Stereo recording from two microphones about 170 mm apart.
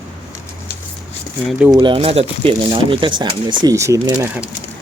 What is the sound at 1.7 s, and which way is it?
Speech, 30° right (ahead or behind).